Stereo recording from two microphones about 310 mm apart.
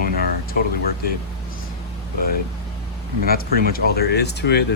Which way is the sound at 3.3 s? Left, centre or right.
Left.